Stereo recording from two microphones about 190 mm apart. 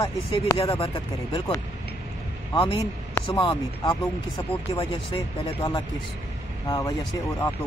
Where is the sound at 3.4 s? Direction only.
25° left (ahead or behind).